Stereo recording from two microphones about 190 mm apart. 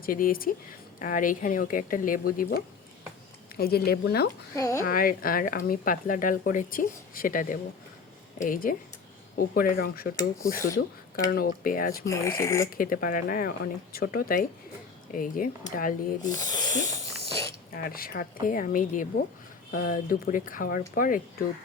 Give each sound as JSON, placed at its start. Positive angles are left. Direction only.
{"t": 0.0, "sound": "speech", "side_deg": 50}
{"t": 3.6, "sound": "speech", "side_deg": 55}
{"t": 4.5, "sound": "filing", "side_deg": 15}
{"t": 4.8, "sound": "speech", "side_deg": 50}
{"t": 10.2, "sound": "filing", "side_deg": 15}
{"t": 11.3, "sound": "speech", "side_deg": 50}
{"t": 12.0, "sound": "filing", "side_deg": 15}
{"t": 12.7, "sound": "speech", "side_deg": 50}
{"t": 16.2, "sound": "speech", "side_deg": 20}
{"t": 17.8, "sound": "speech", "side_deg": 50}